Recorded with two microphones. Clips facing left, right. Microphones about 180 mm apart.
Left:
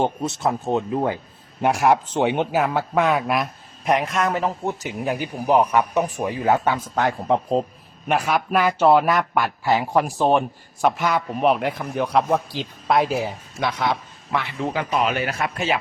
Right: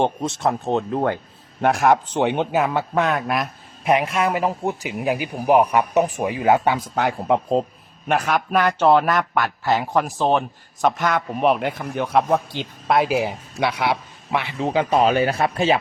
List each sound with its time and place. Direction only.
0.3 s a man's voice: centre (ahead or behind); by 7.2 s 15° right (ahead or behind)
7.3 s a man's voice: 5° right (ahead or behind)
13.1 s speech: 10° right (ahead or behind); by 15.8 s 30° right (ahead or behind)